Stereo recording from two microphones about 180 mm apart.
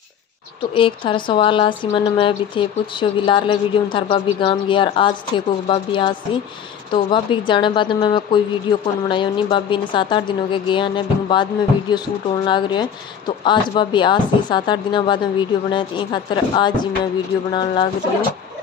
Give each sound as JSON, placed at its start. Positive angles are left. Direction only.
{"t": 0.7, "sound": "speech", "side_deg": 30}
{"t": 12.4, "sound": "speech", "side_deg": 25}